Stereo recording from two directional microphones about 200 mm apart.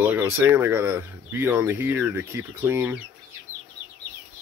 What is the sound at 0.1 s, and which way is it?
Speech, 10° right (ahead or behind).